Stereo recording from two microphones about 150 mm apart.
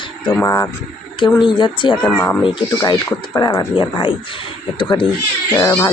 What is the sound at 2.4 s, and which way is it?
Speech, 30° left (ahead or behind).